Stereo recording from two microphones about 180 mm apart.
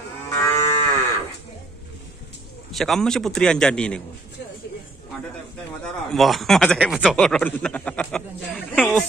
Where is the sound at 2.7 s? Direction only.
Centre (ahead or behind).